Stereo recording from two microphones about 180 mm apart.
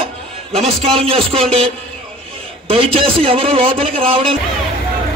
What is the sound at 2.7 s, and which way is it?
A man's voice, 30° right (ahead or behind).